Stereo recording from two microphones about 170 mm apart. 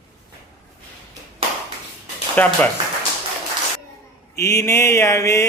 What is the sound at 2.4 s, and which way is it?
Speech, 10° left (ahead or behind).